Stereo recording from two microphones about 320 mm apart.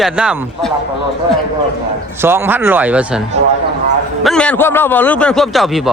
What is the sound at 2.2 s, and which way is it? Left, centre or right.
A man's voice, centre.